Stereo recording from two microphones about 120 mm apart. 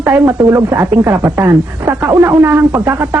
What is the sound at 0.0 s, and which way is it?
A woman's voice, 20° right (ahead or behind).